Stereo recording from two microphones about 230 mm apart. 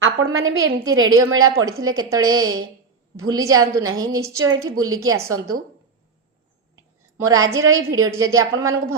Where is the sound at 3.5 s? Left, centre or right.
Right.